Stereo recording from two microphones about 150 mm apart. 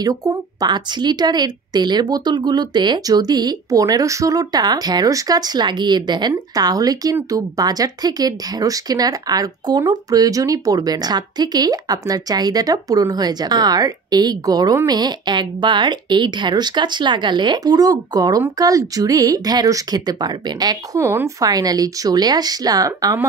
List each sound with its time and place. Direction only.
0.0 s speech: 25° right (ahead or behind)